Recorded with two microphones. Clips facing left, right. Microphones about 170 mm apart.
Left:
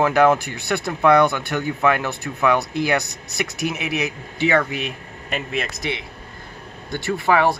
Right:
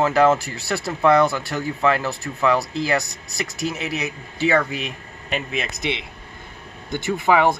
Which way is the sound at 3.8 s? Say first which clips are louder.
Left 2 dB; 65° left (ahead or behind).